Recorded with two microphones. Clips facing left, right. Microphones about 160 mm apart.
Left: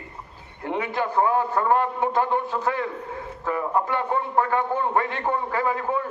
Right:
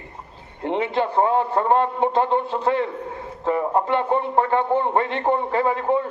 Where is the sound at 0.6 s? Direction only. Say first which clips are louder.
Right 4 dB; 25° right (ahead or behind).